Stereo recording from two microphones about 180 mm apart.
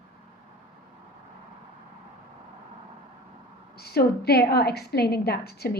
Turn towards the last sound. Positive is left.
turn(degrees=60)  # may be behind; listen again after turning